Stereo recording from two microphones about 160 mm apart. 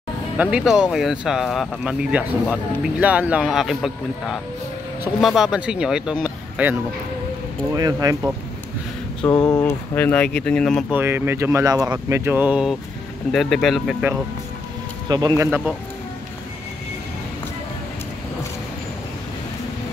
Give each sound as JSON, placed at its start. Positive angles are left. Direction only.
{"t": 0.4, "sound": "speech", "side_deg": -5}
{"t": 7.7, "sound": "speech", "side_deg": -20}
{"t": 9.3, "sound": "speech", "side_deg": 20}
{"t": 10.9, "sound": "speech", "side_deg": -15}
{"t": 15.0, "sound": "speech", "side_deg": -25}